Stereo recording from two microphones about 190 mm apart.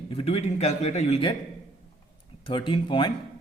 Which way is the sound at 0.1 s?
30° left (ahead or behind).